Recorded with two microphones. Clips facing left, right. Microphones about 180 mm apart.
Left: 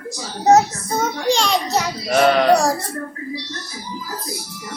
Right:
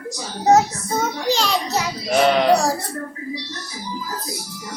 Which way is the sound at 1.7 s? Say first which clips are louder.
Even; 15° right (ahead or behind).